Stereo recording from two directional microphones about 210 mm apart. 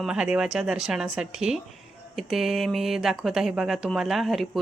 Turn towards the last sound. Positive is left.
turn(degrees=0)  # may be behind; listen again after turning